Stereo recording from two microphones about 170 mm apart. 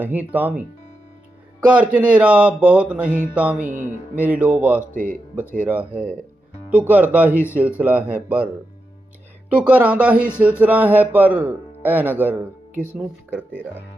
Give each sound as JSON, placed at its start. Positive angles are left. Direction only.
{"t": 0.0, "sound": "speech", "side_deg": -10}
{"t": 1.7, "sound": "speech", "side_deg": -10}
{"t": 4.9, "sound": "speech", "side_deg": -55}
{"t": 5.6, "sound": "speech", "side_deg": -10}
{"t": 9.6, "sound": "speech", "side_deg": -10}